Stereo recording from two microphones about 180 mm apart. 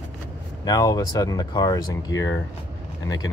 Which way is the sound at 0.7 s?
20° left (ahead or behind).